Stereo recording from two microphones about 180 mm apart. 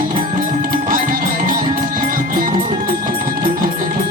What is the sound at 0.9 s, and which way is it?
Music, 50° right (ahead or behind).